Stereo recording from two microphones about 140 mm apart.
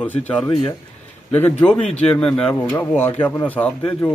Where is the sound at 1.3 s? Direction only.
10° left (ahead or behind).